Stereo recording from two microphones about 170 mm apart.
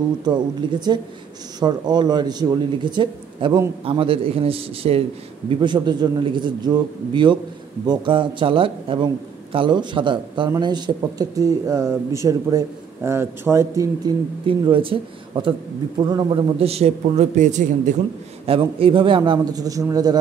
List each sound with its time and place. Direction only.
0.2 s a man's voice: 25° right (ahead or behind)
14.4 s a man's voice: 30° right (ahead or behind)
18.4 s speech: 35° right (ahead or behind)